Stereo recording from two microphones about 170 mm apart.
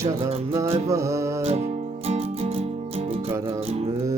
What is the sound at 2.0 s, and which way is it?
Music, 35° right (ahead or behind).